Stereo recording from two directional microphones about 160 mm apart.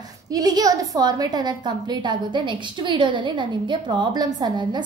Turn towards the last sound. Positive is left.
turn(degrees=-25)  # may be behind; listen again after turning